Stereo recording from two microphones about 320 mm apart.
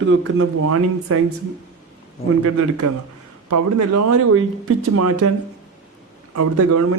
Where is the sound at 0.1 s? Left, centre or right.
Right.